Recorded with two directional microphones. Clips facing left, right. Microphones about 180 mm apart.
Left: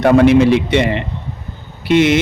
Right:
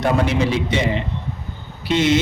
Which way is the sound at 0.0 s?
65° left (ahead or behind).